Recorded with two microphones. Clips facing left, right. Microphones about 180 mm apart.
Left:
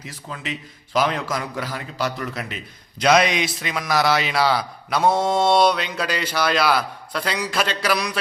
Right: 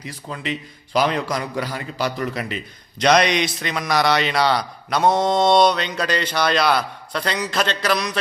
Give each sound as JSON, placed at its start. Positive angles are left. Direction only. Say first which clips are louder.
{"t": 0.0, "sound": "a man's voice", "louder": "right 3 dB", "side_deg": 0}